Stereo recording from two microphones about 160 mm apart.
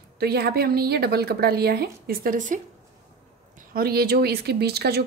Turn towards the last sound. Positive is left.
turn(degrees=-85)